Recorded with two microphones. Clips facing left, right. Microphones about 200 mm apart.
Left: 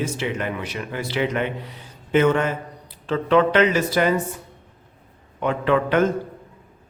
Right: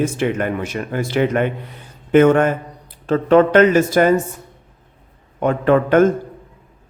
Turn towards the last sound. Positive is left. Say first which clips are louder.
# right 6 dB
turn(degrees=-45)  # may be behind; listen again after turning